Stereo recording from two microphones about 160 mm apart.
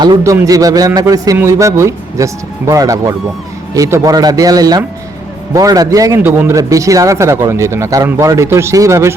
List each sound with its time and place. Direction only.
0.0 s a man's voice: 25° right (ahead or behind)